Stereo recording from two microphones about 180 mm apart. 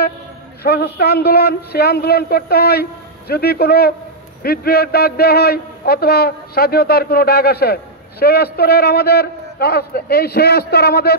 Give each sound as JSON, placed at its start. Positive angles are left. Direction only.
{"t": 0.7, "sound": "a man's voice", "side_deg": 60}